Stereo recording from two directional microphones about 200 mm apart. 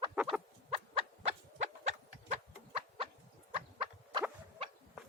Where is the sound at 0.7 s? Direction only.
30° right (ahead or behind).